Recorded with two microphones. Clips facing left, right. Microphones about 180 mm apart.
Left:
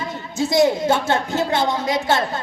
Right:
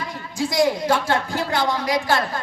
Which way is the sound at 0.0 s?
25° left (ahead or behind).